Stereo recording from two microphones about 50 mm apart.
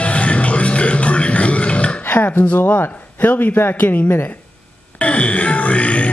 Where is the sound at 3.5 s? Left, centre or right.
Left.